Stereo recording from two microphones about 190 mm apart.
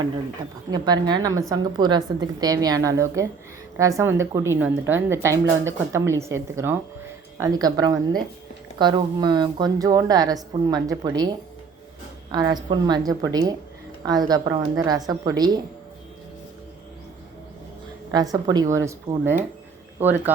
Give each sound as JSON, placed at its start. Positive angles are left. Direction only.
{"t": 0.7, "sound": "a woman's voice", "side_deg": -20}
{"t": 18.1, "sound": "a woman's voice", "side_deg": -20}